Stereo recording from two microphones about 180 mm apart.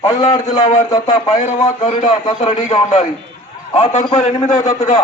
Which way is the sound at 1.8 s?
35° left (ahead or behind).